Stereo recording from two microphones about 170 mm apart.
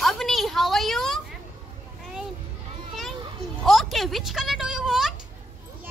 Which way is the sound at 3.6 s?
Centre (ahead or behind).